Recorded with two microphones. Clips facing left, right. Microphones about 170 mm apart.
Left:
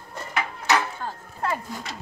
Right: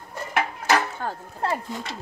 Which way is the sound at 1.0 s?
55° right (ahead or behind).